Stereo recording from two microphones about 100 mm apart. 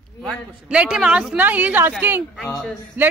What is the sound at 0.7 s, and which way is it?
A woman's voice, 10° right (ahead or behind).